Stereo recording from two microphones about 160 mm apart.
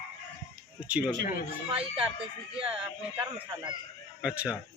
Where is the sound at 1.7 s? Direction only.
35° right (ahead or behind).